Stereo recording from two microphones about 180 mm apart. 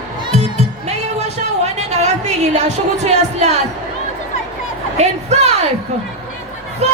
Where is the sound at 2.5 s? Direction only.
40° right (ahead or behind).